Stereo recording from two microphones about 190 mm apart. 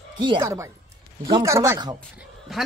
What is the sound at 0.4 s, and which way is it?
Speech, 15° right (ahead or behind).